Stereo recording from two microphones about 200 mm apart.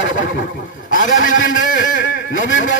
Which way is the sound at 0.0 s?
70° left (ahead or behind).